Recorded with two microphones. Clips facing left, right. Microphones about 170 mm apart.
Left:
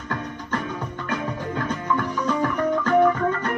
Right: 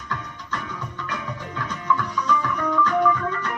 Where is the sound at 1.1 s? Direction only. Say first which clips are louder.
Left 7 dB; 50° left (ahead or behind).